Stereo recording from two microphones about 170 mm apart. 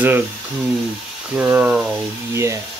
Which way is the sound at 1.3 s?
10° right (ahead or behind).